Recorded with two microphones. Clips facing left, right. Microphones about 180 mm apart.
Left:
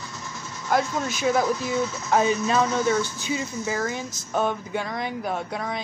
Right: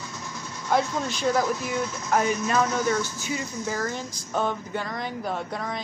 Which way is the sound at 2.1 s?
25° left (ahead or behind).